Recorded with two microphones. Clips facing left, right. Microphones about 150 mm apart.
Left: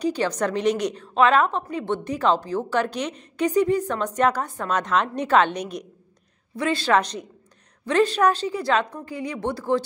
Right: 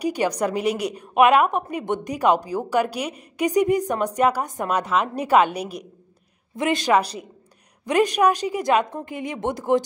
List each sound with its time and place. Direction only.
0.0 s a woman's voice: 15° right (ahead or behind)
6.5 s a woman's voice: 20° right (ahead or behind)